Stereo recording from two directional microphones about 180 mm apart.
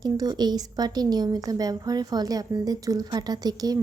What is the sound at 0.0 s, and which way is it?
A woman's voice, 20° right (ahead or behind).